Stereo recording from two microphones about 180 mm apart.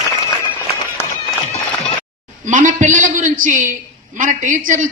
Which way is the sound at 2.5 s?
45° right (ahead or behind).